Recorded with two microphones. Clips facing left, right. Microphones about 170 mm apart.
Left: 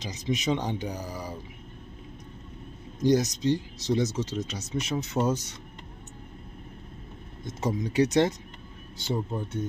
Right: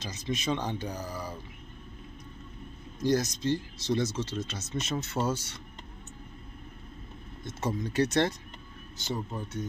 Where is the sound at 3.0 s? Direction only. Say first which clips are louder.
Left 4 dB; 15° left (ahead or behind).